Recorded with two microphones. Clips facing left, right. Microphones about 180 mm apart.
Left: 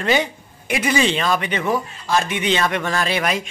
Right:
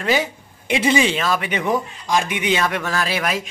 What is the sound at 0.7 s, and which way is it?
Speech, 20° right (ahead or behind).